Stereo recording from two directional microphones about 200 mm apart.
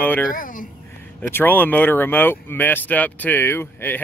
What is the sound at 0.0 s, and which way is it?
Speech, 10° left (ahead or behind).